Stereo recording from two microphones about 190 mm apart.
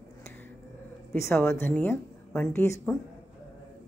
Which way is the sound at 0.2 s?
10° left (ahead or behind).